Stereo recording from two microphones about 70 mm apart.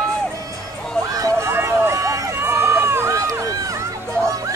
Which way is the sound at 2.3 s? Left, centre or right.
Right.